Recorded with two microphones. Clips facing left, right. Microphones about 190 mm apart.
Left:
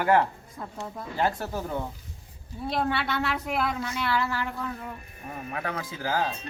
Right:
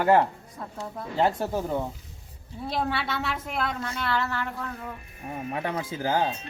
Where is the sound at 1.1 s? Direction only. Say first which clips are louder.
Right 3 dB; 20° right (ahead or behind).